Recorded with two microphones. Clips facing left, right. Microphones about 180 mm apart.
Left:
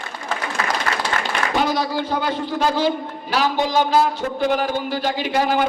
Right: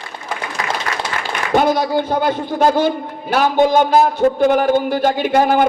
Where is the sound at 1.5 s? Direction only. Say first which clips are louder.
Right 7 dB; 50° right (ahead or behind).